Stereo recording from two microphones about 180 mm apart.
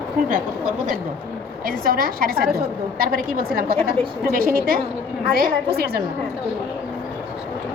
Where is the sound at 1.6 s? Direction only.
55° right (ahead or behind).